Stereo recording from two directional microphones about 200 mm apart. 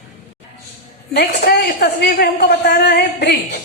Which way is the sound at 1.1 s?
45° left (ahead or behind).